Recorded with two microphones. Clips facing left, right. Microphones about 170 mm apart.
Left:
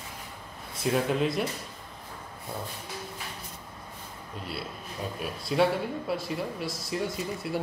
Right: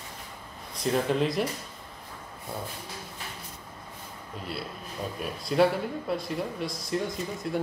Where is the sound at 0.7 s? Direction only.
5° left (ahead or behind).